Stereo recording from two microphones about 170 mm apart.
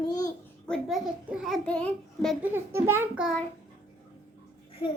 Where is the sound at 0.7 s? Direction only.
Centre (ahead or behind).